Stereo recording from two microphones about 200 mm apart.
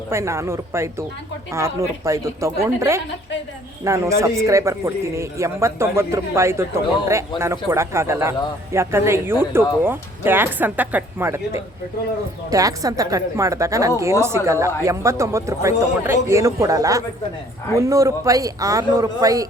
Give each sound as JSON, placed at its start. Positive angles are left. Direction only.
{"t": 0.1, "sound": "a man's voice", "side_deg": -15}